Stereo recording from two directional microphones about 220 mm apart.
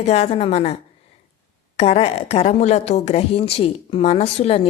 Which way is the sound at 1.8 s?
30° left (ahead or behind).